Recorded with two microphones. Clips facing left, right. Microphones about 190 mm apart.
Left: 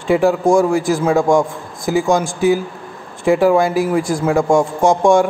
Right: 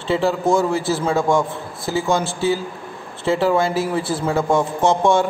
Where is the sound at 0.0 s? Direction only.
15° left (ahead or behind).